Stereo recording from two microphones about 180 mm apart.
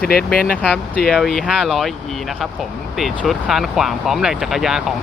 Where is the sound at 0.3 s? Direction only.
55° left (ahead or behind).